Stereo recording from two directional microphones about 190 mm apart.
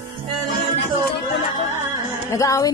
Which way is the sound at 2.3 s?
15° left (ahead or behind).